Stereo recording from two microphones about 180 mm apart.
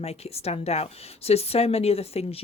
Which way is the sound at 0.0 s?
35° left (ahead or behind).